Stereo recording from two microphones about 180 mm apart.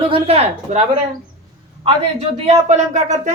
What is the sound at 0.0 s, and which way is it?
Speech, 30° right (ahead or behind).